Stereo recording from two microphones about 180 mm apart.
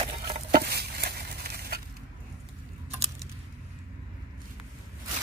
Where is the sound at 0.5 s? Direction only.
60° right (ahead or behind).